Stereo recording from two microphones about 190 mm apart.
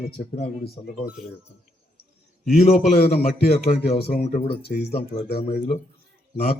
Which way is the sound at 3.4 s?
55° left (ahead or behind).